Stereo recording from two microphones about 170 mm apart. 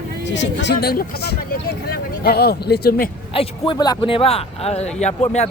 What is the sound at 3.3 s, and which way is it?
A woman's voice, 30° left (ahead or behind).